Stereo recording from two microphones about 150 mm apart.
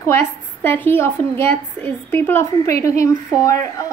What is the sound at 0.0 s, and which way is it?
A woman's voice, 15° left (ahead or behind).